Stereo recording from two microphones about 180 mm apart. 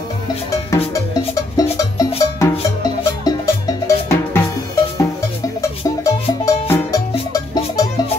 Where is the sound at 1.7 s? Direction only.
20° left (ahead or behind).